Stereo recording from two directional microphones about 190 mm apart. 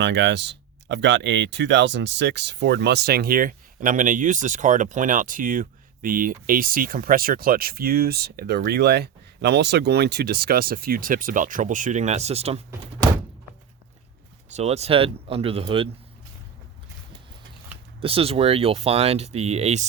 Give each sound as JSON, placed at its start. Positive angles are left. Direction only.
{"t": 0.0, "sound": "speech", "side_deg": -65}
{"t": 14.5, "sound": "speech", "side_deg": -35}
{"t": 18.0, "sound": "speech", "side_deg": -30}